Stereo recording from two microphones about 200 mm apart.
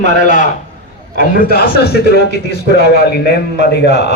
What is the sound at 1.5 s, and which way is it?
Speech, 55° left (ahead or behind).